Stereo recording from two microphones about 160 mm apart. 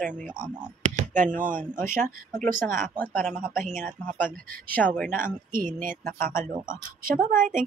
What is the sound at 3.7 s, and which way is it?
Speech, 55° right (ahead or behind).